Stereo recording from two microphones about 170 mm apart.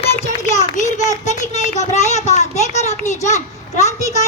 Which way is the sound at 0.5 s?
45° left (ahead or behind).